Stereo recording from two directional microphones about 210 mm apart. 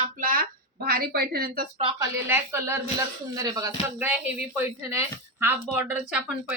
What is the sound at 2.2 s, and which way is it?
Speech, 10° right (ahead or behind).